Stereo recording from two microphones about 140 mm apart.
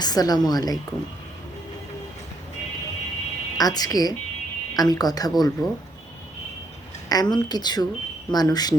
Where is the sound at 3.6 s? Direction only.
25° left (ahead or behind).